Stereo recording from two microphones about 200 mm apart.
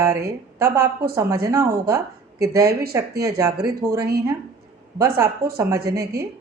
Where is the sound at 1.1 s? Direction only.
15° right (ahead or behind).